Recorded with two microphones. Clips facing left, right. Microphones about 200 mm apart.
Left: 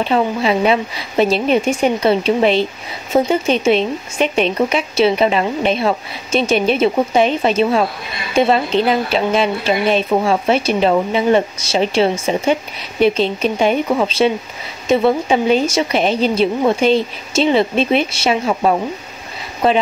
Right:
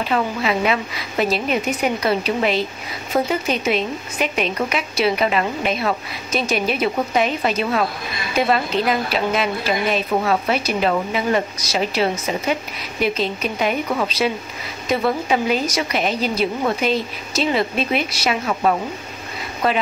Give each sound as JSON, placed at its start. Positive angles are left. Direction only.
{"t": 0.0, "sound": "speech", "side_deg": 30}